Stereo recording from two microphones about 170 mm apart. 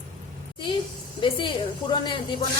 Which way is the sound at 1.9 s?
25° left (ahead or behind).